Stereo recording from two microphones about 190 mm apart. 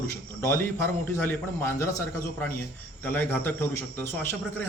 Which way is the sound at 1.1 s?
10° left (ahead or behind).